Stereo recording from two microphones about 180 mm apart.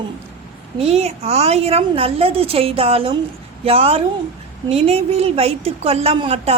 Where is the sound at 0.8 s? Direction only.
35° right (ahead or behind).